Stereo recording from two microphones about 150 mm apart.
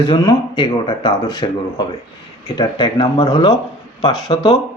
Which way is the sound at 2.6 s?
30° left (ahead or behind).